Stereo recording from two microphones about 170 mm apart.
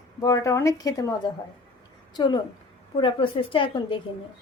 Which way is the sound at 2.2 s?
25° left (ahead or behind).